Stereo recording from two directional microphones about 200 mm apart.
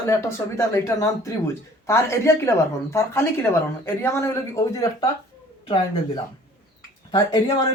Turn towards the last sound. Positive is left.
turn(degrees=20)  # may be behind; listen again after turning